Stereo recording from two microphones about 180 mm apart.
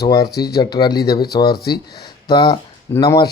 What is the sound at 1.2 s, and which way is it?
Speech, 60° left (ahead or behind).